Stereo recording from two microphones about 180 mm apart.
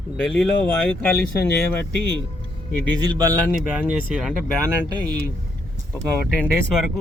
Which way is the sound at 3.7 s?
5° right (ahead or behind).